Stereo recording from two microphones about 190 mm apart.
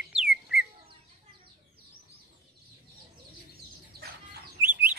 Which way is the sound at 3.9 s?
55° right (ahead or behind).